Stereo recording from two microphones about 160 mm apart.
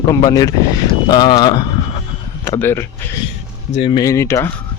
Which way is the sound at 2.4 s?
15° left (ahead or behind).